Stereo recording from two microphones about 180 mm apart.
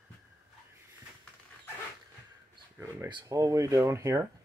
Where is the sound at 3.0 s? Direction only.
15° right (ahead or behind).